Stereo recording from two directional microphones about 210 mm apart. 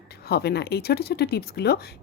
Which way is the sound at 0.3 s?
50° left (ahead or behind).